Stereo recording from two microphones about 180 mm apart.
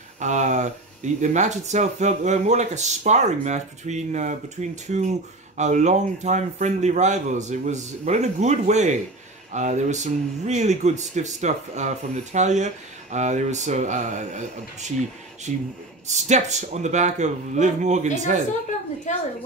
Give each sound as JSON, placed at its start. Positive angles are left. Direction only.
{"t": 0.2, "sound": "speech", "side_deg": -40}
{"t": 19.1, "sound": "a woman's voice", "side_deg": 40}